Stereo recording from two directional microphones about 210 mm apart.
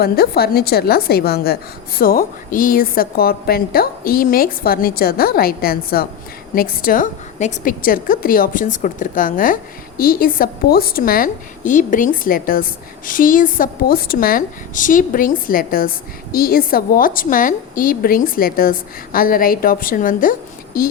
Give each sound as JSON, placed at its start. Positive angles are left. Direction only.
{"t": 0.0, "sound": "a woman's voice", "side_deg": 45}